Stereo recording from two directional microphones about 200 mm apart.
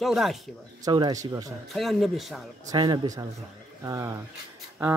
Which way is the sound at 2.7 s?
20° right (ahead or behind).